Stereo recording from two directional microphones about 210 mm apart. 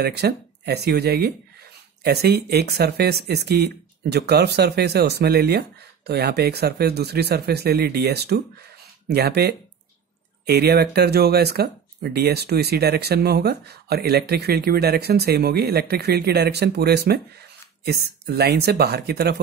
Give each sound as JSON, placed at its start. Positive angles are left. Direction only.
{"t": 0.0, "sound": "speech", "side_deg": -50}